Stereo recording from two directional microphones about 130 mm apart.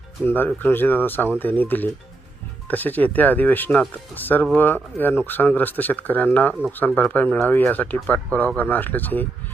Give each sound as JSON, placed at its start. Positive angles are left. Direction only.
{"t": 0.3, "sound": "speech", "side_deg": 15}